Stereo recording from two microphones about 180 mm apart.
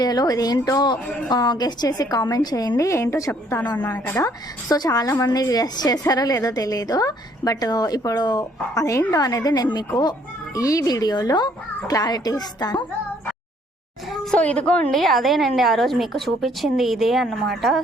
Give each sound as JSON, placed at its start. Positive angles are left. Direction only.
{"t": 0.0, "sound": "a woman's voice", "side_deg": 20}
{"t": 4.7, "sound": "a woman's voice", "side_deg": 20}
{"t": 14.1, "sound": "a woman's voice", "side_deg": 5}